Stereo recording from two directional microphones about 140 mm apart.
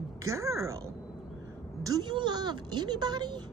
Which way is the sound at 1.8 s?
30° right (ahead or behind).